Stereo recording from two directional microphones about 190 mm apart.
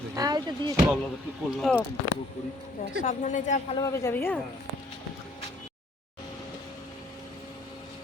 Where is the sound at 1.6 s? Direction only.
Centre (ahead or behind).